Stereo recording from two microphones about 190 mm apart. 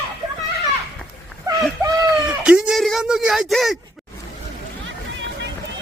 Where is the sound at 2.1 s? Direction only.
5° right (ahead or behind).